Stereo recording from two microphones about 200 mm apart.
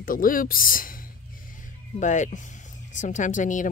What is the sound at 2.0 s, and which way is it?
Speech, 40° left (ahead or behind).